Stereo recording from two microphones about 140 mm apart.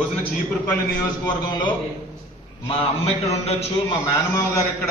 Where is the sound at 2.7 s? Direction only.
45° left (ahead or behind).